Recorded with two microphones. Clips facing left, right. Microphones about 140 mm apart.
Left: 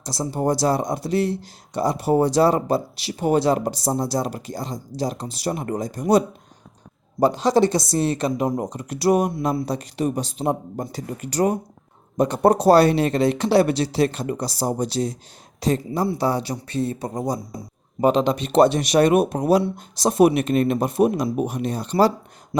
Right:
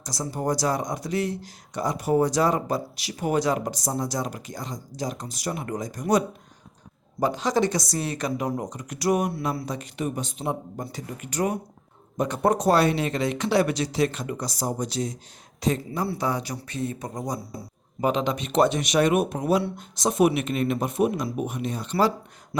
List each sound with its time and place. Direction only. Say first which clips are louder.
0.0 s speech: left 5 dB; 30° left (ahead or behind)
7.2 s speech: left 6 dB; 35° left (ahead or behind)